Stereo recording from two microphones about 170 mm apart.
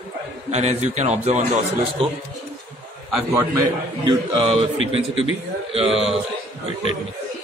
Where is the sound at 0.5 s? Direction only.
40° right (ahead or behind).